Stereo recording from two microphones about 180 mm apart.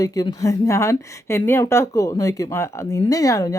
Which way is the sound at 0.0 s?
20° left (ahead or behind).